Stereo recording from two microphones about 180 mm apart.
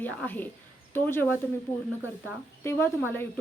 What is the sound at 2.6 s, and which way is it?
Speech, 15° left (ahead or behind).